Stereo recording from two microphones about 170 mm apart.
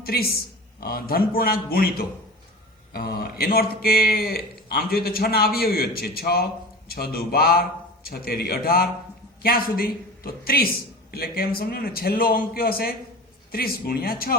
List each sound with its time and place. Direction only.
0.0 s a man's voice: 65° left (ahead or behind)